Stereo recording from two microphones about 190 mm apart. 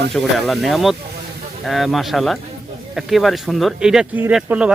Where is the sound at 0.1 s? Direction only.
Centre (ahead or behind).